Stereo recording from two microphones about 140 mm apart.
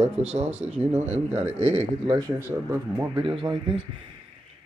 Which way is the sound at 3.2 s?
40° right (ahead or behind).